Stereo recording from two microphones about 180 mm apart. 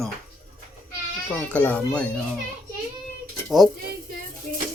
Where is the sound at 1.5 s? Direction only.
10° left (ahead or behind).